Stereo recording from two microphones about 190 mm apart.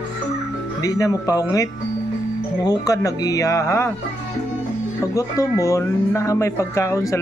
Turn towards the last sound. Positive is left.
turn(degrees=15)  # may be behind; listen again after turning